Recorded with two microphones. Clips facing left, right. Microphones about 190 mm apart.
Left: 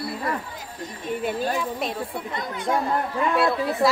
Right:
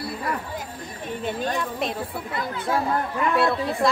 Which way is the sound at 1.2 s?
5° left (ahead or behind).